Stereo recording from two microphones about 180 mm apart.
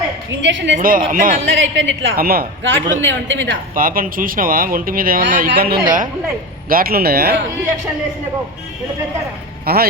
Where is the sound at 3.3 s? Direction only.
90° right.